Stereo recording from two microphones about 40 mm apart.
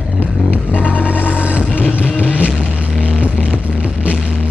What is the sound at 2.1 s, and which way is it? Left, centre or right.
Music, right.